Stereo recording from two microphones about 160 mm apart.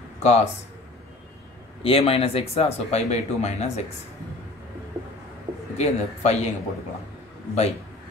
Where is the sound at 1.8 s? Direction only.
35° left (ahead or behind).